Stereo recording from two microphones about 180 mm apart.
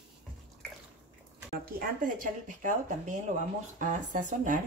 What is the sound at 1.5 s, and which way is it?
Speech, 55° right (ahead or behind).